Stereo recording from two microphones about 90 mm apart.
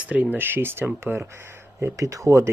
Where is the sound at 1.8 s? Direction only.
35° right (ahead or behind).